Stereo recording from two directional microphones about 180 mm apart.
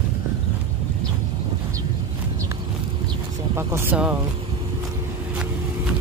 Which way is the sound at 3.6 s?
15° right (ahead or behind).